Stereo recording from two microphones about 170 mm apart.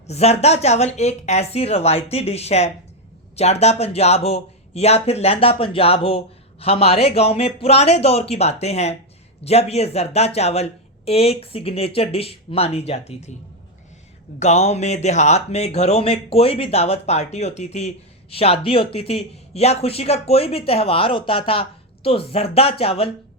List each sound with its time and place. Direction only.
0.1 s speech: 40° left (ahead or behind)
14.3 s speech: 40° left (ahead or behind)